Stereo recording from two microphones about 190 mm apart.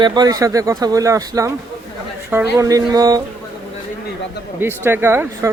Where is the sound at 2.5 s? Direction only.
20° right (ahead or behind).